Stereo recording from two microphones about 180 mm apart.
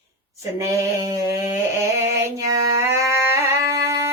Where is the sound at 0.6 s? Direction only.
20° right (ahead or behind).